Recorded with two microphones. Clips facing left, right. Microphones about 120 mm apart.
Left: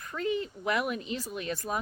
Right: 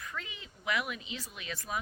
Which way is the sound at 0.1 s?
45° left (ahead or behind).